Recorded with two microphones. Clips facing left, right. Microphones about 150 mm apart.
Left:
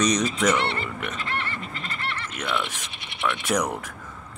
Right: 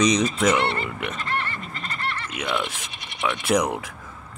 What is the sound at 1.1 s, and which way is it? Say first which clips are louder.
Goat: right 2 dB; 45° right (ahead or behind).